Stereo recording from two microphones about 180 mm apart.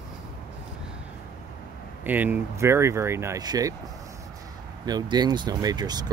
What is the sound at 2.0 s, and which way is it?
Speech, 10° right (ahead or behind).